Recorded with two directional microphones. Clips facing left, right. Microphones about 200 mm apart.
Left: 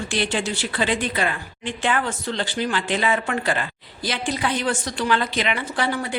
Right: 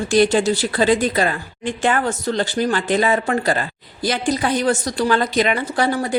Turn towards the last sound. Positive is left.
turn(degrees=-40)  # may be behind; listen again after turning